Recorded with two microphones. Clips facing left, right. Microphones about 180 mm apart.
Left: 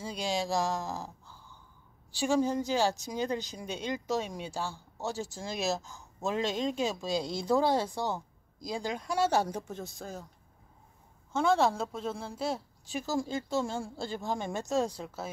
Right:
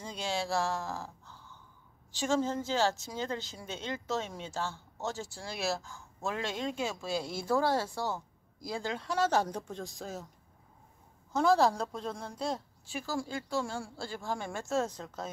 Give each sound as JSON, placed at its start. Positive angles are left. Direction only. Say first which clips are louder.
{"t": 0.0, "sound": "speech", "louder": "left 3 dB", "side_deg": 15}
{"t": 11.3, "sound": "a woman's voice", "louder": "right 1 dB", "side_deg": 0}
{"t": 12.8, "sound": "speech", "louder": "left 5 dB", "side_deg": 20}